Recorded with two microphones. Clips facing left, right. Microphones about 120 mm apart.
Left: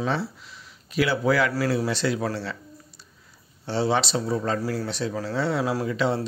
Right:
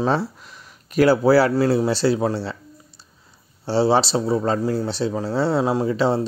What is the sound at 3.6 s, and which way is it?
Speech, 30° right (ahead or behind).